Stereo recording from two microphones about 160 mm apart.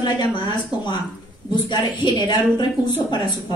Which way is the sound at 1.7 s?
25° left (ahead or behind).